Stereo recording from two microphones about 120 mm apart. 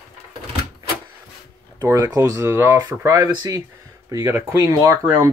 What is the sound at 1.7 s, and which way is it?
Speech, 25° right (ahead or behind).